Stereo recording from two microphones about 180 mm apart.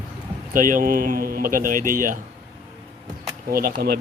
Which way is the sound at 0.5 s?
50° right (ahead or behind).